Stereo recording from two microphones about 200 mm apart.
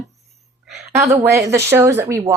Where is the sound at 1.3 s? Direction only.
15° right (ahead or behind).